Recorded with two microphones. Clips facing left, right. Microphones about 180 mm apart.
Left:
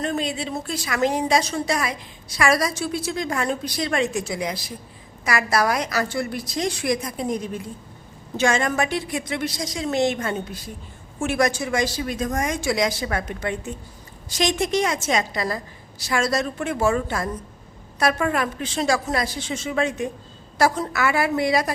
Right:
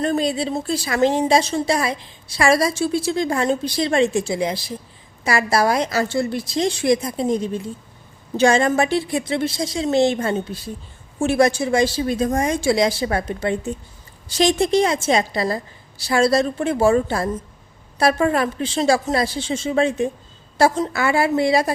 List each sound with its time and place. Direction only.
0.0 s a woman's voice: 35° right (ahead or behind)